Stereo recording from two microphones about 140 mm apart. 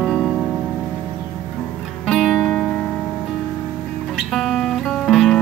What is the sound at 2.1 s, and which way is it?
Music, centre (ahead or behind).